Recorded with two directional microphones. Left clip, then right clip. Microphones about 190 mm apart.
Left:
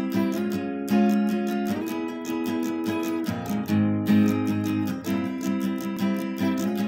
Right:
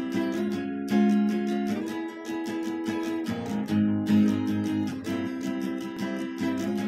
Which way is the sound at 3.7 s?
35° left (ahead or behind).